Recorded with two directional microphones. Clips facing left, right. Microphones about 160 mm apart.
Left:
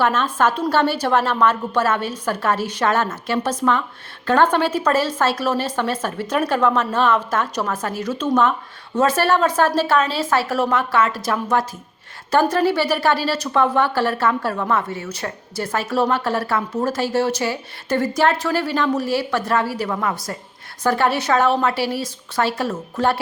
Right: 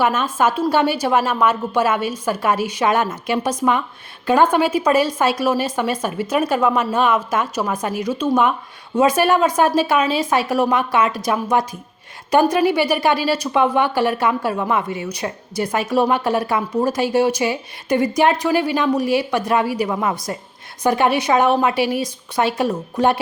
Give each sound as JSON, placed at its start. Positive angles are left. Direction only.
{"t": 0.0, "sound": "speech", "side_deg": -10}